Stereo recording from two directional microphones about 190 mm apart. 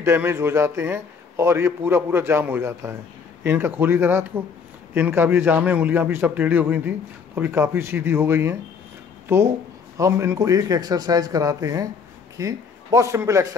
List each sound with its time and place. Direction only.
0.0 s a man's voice: 10° right (ahead or behind)